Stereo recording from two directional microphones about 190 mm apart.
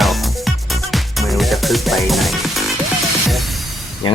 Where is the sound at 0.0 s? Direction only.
Centre (ahead or behind).